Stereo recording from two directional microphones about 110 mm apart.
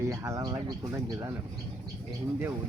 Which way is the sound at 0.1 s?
30° right (ahead or behind).